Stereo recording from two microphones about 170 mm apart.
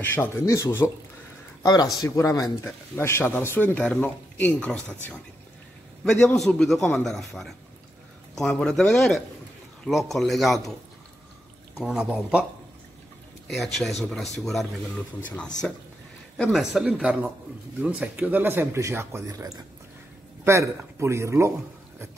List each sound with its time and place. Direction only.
0.0 s speech: 10° left (ahead or behind)
6.0 s a man's voice: 5° left (ahead or behind)
11.8 s a man's voice: 5° right (ahead or behind)
13.5 s a man's voice: centre (ahead or behind); by 21.5 s 15° right (ahead or behind)